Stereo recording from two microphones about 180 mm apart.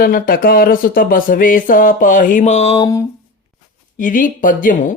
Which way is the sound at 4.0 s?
45° left (ahead or behind).